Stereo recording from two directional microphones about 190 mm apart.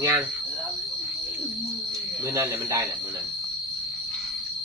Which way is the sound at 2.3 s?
15° right (ahead or behind).